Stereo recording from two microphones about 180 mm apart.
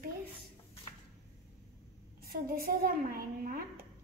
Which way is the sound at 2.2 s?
55° right (ahead or behind).